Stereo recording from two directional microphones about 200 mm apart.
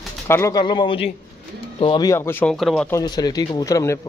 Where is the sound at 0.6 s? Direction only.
25° left (ahead or behind); by 2.8 s centre (ahead or behind).